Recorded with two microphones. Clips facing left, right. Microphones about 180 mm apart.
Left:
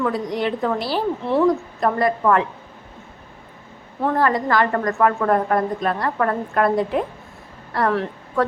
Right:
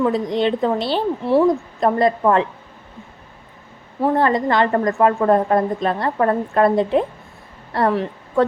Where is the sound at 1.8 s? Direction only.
25° right (ahead or behind).